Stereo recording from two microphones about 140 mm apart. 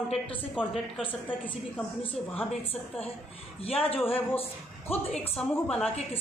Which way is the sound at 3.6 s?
45° left (ahead or behind).